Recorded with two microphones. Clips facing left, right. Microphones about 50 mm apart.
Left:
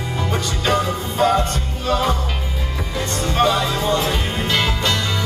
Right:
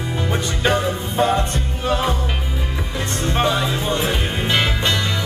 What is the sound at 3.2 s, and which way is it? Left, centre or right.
Music, centre.